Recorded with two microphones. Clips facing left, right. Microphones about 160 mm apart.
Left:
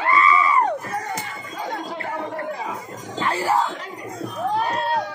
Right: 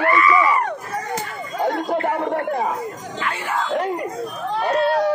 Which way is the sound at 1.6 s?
60° right (ahead or behind).